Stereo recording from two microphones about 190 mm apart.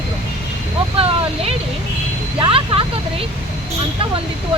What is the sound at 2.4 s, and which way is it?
Speech, 25° right (ahead or behind).